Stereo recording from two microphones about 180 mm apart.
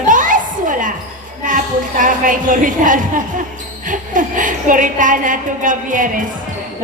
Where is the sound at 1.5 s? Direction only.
45° right (ahead or behind).